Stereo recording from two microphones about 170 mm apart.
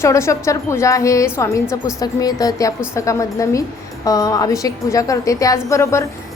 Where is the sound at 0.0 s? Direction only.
15° left (ahead or behind).